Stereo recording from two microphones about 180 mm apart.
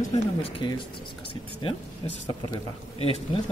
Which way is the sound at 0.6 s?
25° left (ahead or behind).